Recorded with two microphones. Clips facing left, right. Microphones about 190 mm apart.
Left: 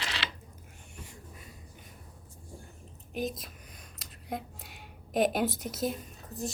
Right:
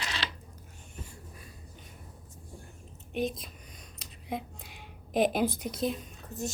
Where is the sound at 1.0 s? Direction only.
20° left (ahead or behind).